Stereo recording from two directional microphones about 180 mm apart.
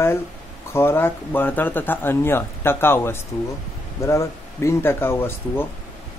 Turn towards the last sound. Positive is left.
turn(degrees=10)  # may be behind; listen again after turning